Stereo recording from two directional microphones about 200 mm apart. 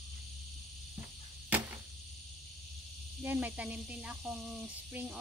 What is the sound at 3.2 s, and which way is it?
Speech, 10° right (ahead or behind).